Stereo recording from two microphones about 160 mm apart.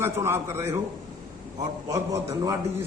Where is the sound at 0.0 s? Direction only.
15° right (ahead or behind).